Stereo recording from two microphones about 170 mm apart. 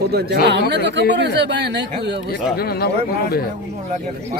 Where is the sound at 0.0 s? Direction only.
70° right (ahead or behind).